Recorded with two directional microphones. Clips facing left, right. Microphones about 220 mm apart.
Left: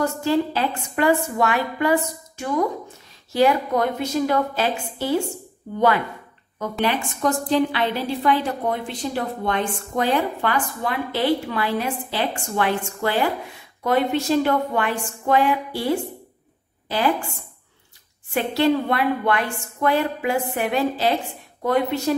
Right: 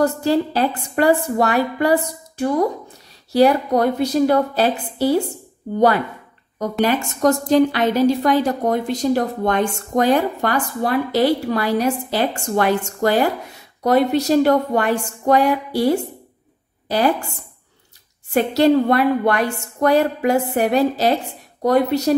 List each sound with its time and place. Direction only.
0.0 s a woman's voice: 35° right (ahead or behind)
6.9 s a woman's voice: 45° right (ahead or behind)
18.3 s a woman's voice: 40° right (ahead or behind)